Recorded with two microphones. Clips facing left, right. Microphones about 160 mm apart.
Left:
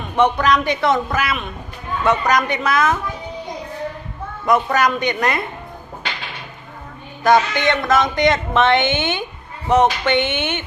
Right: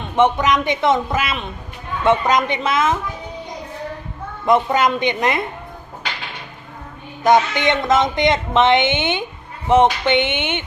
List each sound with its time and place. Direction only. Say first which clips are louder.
0.0 s speech: right 1 dB; 20° right (ahead or behind)
4.4 s speech: right 1 dB; 25° right (ahead or behind)
7.3 s speech: even; 20° right (ahead or behind)